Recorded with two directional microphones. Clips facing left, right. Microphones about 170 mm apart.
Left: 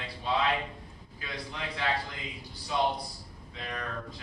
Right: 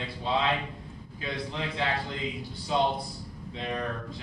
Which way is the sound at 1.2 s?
25° right (ahead or behind).